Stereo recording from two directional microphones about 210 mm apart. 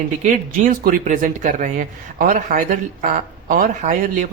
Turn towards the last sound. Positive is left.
turn(degrees=-35)  # may be behind; listen again after turning